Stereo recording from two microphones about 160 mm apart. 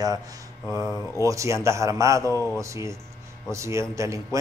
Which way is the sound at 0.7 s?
15° right (ahead or behind).